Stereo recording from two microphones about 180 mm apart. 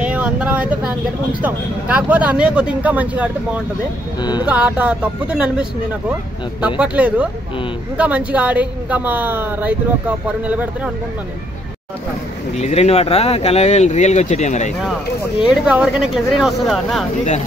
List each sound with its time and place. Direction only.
0.0 s a woman's voice: 5° right (ahead or behind)
4.2 s speech: 25° left (ahead or behind)
4.5 s a woman's voice: 5° right (ahead or behind)
12.5 s speech: 35° left (ahead or behind)
15.6 s speech: 5° right (ahead or behind)